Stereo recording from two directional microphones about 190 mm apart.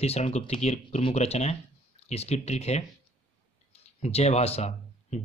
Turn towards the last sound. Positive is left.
turn(degrees=35)  # may be behind; listen again after turning